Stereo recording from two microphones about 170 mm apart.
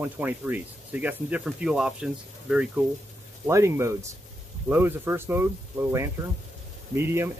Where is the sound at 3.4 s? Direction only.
15° right (ahead or behind).